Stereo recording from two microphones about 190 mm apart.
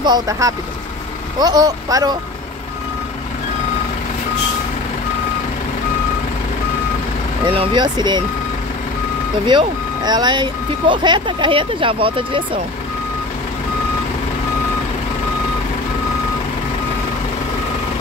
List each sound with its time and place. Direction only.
0.0 s speech: 20° right (ahead or behind)
7.5 s speech: 25° right (ahead or behind)
9.5 s speech: 25° right (ahead or behind)